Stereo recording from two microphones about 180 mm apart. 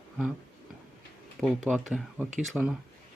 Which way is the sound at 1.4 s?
Centre (ahead or behind).